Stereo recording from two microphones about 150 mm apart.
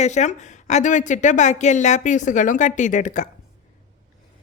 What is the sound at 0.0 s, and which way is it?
Speech, 50° left (ahead or behind).